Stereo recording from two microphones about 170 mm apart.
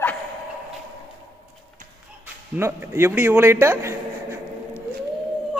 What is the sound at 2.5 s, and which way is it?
A man's voice, 15° right (ahead or behind).